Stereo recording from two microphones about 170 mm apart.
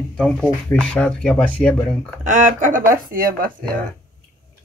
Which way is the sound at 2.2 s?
50° right (ahead or behind).